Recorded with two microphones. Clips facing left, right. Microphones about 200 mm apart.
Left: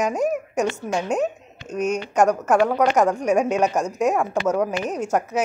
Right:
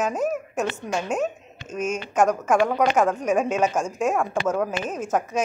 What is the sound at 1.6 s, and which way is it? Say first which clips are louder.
Speech: left 4 dB; 65° left (ahead or behind).